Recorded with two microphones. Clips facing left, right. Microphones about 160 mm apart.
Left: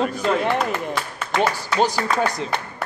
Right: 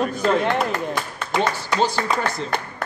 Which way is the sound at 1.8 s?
15° left (ahead or behind).